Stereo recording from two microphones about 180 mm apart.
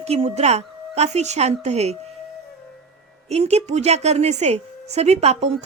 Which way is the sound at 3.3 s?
35° right (ahead or behind).